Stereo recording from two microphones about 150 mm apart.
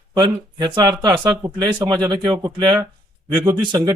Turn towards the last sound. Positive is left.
turn(degrees=-25)  # may be behind; listen again after turning